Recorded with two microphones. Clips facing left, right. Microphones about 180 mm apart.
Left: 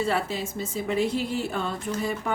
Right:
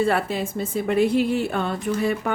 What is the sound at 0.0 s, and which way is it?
Speech, 60° right (ahead or behind).